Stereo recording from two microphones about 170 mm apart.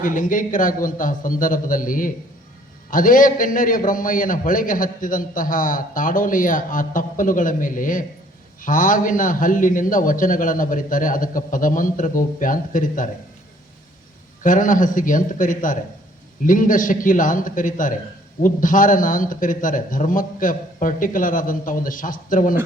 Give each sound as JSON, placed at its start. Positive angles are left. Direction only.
{"t": 0.0, "sound": "a man's voice", "side_deg": 55}
{"t": 14.4, "sound": "a man's voice", "side_deg": 50}